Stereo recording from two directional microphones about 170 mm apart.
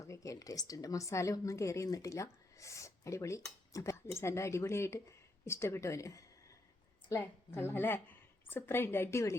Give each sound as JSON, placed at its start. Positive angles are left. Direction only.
{"t": 0.0, "sound": "a woman's voice", "side_deg": 20}